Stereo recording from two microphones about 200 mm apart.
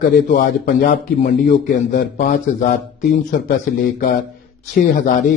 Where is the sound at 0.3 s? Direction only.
45° left (ahead or behind).